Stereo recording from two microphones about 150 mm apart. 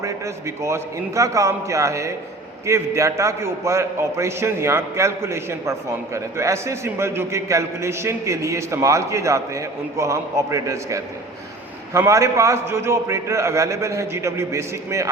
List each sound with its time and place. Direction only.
0.0 s a man's voice: 20° right (ahead or behind)